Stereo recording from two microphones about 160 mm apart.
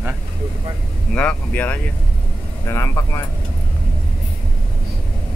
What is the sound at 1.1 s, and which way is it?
Speech, 10° left (ahead or behind).